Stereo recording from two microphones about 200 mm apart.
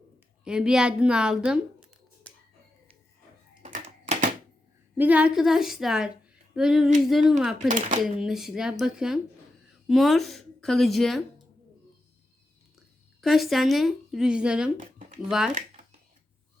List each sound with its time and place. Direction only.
0.4 s speech: 5° right (ahead or behind)
3.6 s a sound: 40° right (ahead or behind)
4.9 s a woman's voice: 5° right (ahead or behind)
6.5 s a sound: 5° right (ahead or behind)
7.0 s a woman's voice: centre (ahead or behind)
7.7 s speech: 35° right (ahead or behind)
8.2 s a woman's voice: centre (ahead or behind)
13.2 s a woman's voice: centre (ahead or behind)
14.8 s a sound: 40° right (ahead or behind)
15.3 s a woman's voice: 5° right (ahead or behind)